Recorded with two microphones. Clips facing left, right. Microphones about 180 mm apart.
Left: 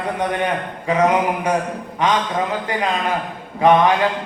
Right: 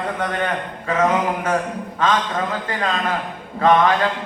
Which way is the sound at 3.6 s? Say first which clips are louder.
Left 2 dB; 15° left (ahead or behind).